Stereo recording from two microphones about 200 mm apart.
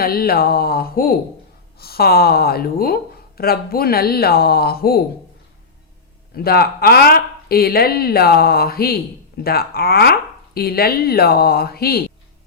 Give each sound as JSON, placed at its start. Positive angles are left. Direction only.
{"t": 0.0, "sound": "speech", "side_deg": 50}
{"t": 6.3, "sound": "speech", "side_deg": 50}